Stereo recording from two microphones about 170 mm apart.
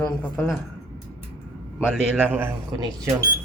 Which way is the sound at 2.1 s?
10° right (ahead or behind).